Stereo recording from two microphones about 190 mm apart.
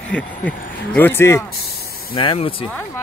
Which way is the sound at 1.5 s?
55° left (ahead or behind).